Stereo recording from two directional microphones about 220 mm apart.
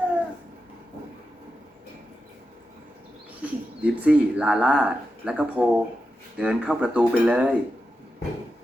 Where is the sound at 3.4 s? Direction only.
5° right (ahead or behind).